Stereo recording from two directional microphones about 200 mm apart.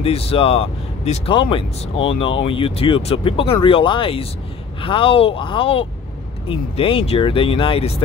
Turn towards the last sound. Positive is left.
turn(degrees=30)  # may be behind; listen again after turning